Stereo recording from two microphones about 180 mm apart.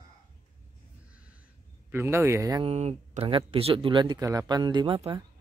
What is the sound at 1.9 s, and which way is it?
Speech, 15° right (ahead or behind).